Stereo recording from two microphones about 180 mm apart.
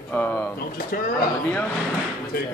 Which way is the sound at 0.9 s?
55° left (ahead or behind).